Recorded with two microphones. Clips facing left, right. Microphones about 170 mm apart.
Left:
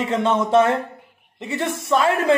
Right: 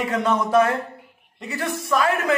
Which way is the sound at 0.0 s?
25° left (ahead or behind).